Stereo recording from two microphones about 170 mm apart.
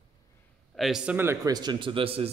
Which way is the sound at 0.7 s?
Centre (ahead or behind).